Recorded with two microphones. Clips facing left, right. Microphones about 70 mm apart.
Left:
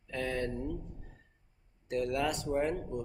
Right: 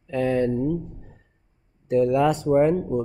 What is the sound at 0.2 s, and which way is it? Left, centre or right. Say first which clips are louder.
Speech: right 13 dB; right.